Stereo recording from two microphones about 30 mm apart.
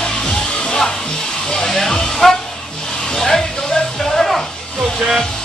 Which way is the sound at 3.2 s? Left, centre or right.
Centre.